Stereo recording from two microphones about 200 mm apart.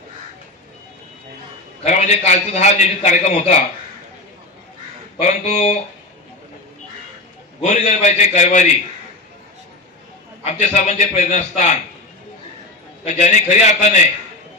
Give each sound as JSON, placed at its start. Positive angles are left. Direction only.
{"t": 1.8, "sound": "a man's voice", "side_deg": 35}
{"t": 5.2, "sound": "a man's voice", "side_deg": 35}
{"t": 7.6, "sound": "a man's voice", "side_deg": 35}
{"t": 10.4, "sound": "a man's voice", "side_deg": 35}
{"t": 13.1, "sound": "a man's voice", "side_deg": 35}